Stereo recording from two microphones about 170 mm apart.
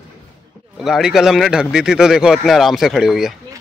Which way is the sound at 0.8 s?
Centre (ahead or behind).